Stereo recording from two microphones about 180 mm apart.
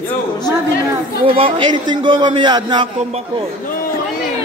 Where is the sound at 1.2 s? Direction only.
30° right (ahead or behind).